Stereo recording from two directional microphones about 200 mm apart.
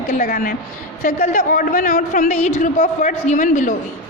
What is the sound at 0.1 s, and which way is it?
A woman's voice, 40° left (ahead or behind).